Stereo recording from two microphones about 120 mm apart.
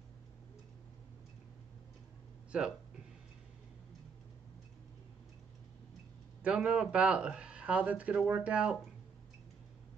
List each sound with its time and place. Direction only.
2.5 s speech: 10° right (ahead or behind)
6.4 s speech: 5° right (ahead or behind)